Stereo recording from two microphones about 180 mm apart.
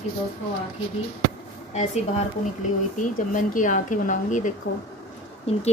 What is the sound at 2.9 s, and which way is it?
Speech, 50° left (ahead or behind).